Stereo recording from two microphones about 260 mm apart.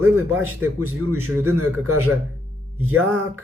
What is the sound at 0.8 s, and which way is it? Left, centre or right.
Speech, right.